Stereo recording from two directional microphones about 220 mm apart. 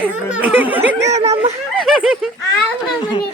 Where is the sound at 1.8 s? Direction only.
Centre (ahead or behind).